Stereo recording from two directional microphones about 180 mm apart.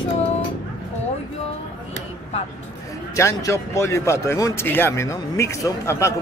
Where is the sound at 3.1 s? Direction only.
15° left (ahead or behind).